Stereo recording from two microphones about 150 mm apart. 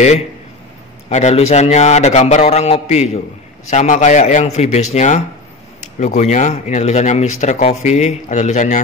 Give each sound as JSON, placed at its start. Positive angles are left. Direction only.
{"t": 1.0, "sound": "speech", "side_deg": 45}